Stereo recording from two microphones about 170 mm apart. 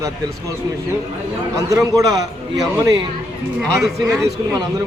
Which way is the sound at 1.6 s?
20° right (ahead or behind).